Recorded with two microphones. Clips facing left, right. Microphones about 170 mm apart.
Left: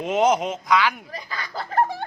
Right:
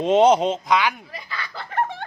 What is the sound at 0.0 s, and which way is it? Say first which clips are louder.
Speech: right 4 dB; 30° right (ahead or behind).